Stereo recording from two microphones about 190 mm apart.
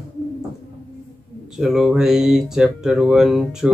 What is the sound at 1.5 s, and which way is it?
Speech, centre (ahead or behind).